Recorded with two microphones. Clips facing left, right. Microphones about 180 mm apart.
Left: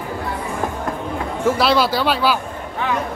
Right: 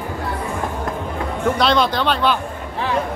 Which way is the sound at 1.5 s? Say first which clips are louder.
Left 1 dB; 5° left (ahead or behind).